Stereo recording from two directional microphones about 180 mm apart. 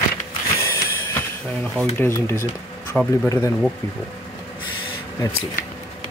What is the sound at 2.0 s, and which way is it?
Speech, 15° left (ahead or behind).